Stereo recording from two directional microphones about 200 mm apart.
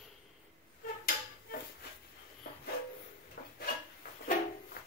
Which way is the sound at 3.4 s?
45° left (ahead or behind).